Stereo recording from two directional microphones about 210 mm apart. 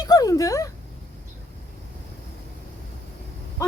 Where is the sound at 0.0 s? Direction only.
15° left (ahead or behind).